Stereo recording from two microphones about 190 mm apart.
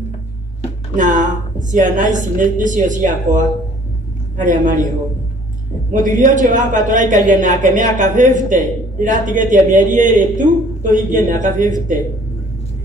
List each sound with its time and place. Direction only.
0.9 s a man's voice: 40° right (ahead or behind)
5.9 s a man's voice: 45° right (ahead or behind)